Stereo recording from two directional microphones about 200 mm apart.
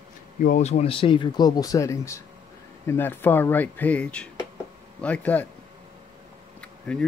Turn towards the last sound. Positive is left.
turn(degrees=5)  # may be behind; listen again after turning